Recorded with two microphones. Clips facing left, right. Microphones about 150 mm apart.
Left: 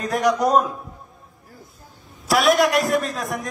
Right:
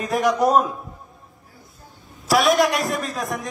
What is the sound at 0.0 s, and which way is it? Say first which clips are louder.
Speech: even; centre (ahead or behind).